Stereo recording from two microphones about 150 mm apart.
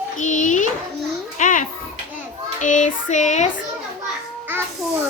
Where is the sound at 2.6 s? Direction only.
55° left (ahead or behind).